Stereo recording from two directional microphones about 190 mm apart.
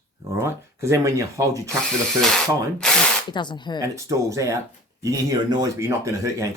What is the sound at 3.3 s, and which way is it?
Speech, 25° left (ahead or behind).